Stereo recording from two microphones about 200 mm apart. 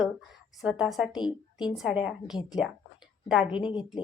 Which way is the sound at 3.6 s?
25° left (ahead or behind).